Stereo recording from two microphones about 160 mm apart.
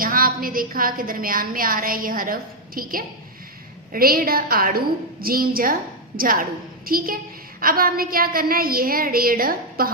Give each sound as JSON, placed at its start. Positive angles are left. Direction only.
{"t": 0.0, "sound": "a woman's voice", "side_deg": -60}